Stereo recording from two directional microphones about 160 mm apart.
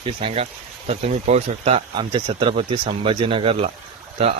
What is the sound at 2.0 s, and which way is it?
Speech, 30° right (ahead or behind).